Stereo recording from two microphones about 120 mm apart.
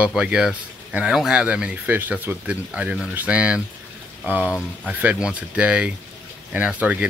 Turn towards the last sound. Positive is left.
turn(degrees=-10)  # may be behind; listen again after turning